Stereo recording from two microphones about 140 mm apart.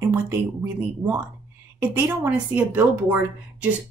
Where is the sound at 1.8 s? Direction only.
15° right (ahead or behind).